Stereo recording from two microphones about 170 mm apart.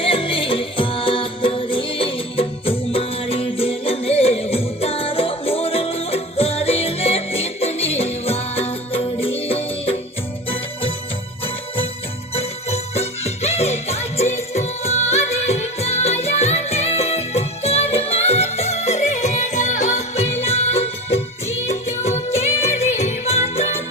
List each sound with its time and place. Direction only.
0.0 s music: 30° left (ahead or behind)
12.3 s music: 35° left (ahead or behind)
20.4 s music of bollywood: 35° left (ahead or behind)